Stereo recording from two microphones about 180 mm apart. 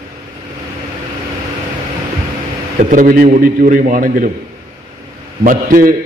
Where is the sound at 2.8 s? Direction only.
45° right (ahead or behind).